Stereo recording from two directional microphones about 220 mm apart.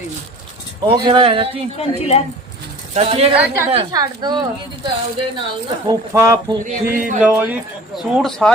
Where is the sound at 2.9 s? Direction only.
25° right (ahead or behind).